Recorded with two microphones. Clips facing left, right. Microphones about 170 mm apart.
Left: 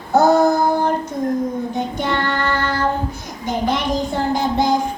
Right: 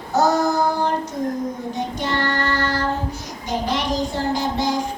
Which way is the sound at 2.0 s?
55° left (ahead or behind).